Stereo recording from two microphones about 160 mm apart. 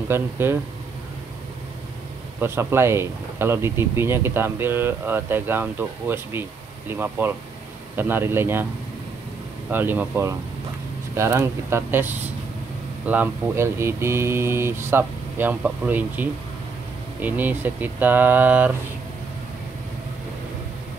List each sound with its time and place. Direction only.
0.1 s speech: 15° right (ahead or behind)
2.4 s speech: 15° right (ahead or behind)
9.7 s speech: 10° right (ahead or behind)